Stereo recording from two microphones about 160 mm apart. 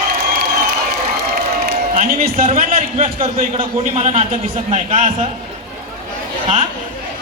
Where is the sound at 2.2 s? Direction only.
45° right (ahead or behind).